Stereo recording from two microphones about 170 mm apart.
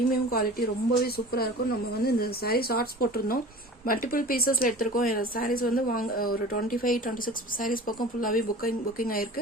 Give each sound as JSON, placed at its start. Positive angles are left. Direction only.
{"t": 0.1, "sound": "speech", "side_deg": 60}